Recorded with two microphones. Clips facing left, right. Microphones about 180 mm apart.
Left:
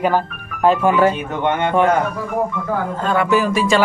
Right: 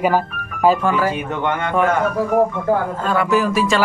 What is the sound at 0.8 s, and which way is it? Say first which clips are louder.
Speech: left 4 dB; 20° left (ahead or behind).